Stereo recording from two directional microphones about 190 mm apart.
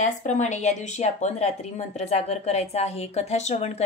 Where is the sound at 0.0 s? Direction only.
40° left (ahead or behind).